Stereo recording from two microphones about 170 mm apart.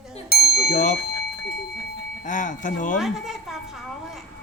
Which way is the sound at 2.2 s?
50° left (ahead or behind).